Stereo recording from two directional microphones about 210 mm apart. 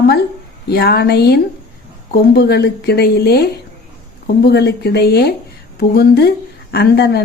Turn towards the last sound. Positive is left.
turn(degrees=50)  # may be behind; listen again after turning